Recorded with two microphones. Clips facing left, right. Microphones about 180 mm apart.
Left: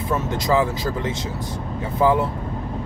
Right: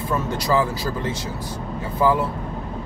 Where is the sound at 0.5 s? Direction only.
20° left (ahead or behind).